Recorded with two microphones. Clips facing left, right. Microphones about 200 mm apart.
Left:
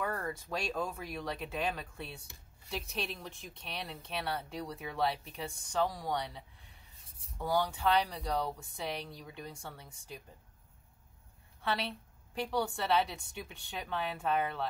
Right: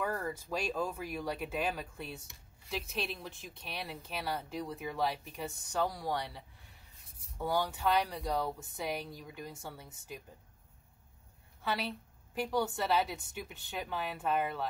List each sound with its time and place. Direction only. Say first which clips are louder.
0.0 s speech: right 1 dB; 10° right (ahead or behind)
7.1 s a sound: left 2 dB; 30° left (ahead or behind)
7.3 s speech: left 1 dB; 5° right (ahead or behind)
11.6 s a woman's voice: even; 5° right (ahead or behind)